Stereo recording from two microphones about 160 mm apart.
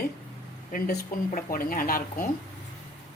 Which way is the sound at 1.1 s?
60° left (ahead or behind).